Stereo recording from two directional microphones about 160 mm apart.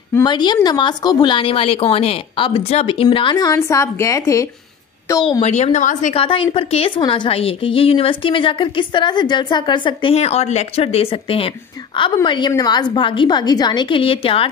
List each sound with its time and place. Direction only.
0.2 s a woman's voice: 30° left (ahead or behind)
5.4 s speech: 45° left (ahead or behind)
6.1 s a woman's voice: 30° left (ahead or behind)